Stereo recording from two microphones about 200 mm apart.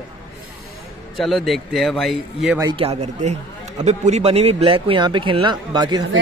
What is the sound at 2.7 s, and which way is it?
A man's voice, 30° right (ahead or behind).